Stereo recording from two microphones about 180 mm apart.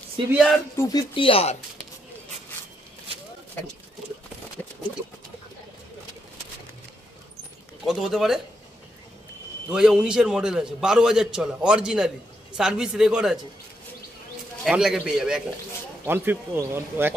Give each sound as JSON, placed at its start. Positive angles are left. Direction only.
{"t": 0.7, "sound": "speech", "side_deg": 20}
{"t": 7.8, "sound": "a man's voice", "side_deg": 0}
{"t": 9.7, "sound": "a man's voice", "side_deg": -5}
{"t": 14.6, "sound": "a man's voice", "side_deg": -5}